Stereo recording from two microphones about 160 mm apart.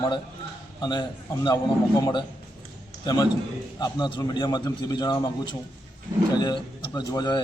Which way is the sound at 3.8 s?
25° left (ahead or behind).